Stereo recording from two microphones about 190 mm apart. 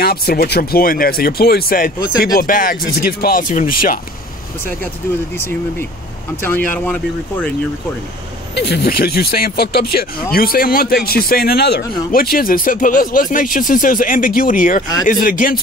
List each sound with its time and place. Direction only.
0.0 s speech: 55° left (ahead or behind)
6.7 s speech: 10° left (ahead or behind)
8.5 s speech: 60° left (ahead or behind)